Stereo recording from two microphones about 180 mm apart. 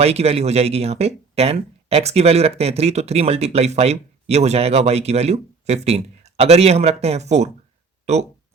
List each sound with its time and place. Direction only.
0.0 s speech: 35° right (ahead or behind)